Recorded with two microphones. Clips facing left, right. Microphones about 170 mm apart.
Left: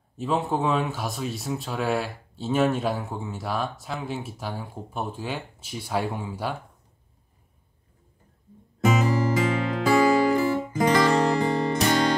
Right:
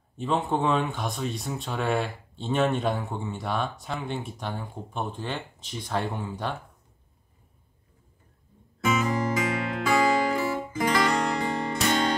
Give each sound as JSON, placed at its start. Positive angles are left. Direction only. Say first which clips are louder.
{"t": 0.2, "sound": "speech", "louder": "left 1 dB", "side_deg": 0}
{"t": 8.8, "sound": "music", "louder": "left 3 dB", "side_deg": 35}